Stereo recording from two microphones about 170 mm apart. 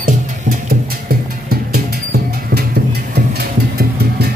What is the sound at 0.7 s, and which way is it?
Music, 65° right (ahead or behind).